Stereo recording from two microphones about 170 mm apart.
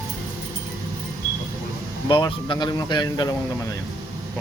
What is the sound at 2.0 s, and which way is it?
Speech, 25° left (ahead or behind).